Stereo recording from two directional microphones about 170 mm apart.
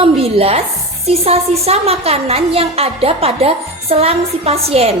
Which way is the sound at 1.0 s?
35° right (ahead or behind).